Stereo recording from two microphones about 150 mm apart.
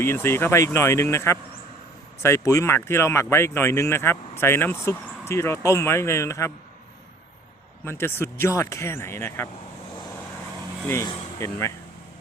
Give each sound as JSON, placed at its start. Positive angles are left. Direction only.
{"t": 0.0, "sound": "speech", "side_deg": 15}
{"t": 7.9, "sound": "speech", "side_deg": 15}
{"t": 11.3, "sound": "speech", "side_deg": 20}